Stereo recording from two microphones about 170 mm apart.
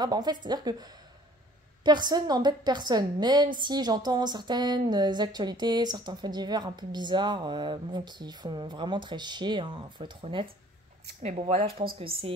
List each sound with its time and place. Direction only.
0.0 s a woman's voice: 25° right (ahead or behind)
1.9 s a woman's voice: 25° right (ahead or behind)